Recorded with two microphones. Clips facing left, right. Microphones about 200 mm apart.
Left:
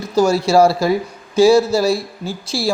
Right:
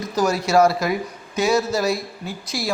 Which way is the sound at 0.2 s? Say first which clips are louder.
Left 5 dB; 30° left (ahead or behind).